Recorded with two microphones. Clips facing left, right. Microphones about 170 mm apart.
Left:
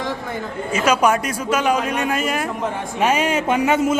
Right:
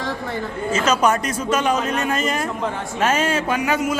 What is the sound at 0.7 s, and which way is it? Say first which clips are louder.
A man's voice: left 1 dB; 10° left (ahead or behind).